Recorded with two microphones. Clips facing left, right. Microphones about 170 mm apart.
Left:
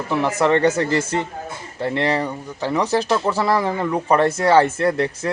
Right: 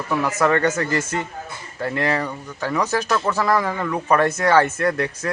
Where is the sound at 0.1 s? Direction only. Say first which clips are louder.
Left 2 dB; 25° left (ahead or behind).